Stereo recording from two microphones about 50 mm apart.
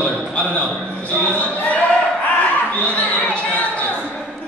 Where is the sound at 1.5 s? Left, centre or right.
Left.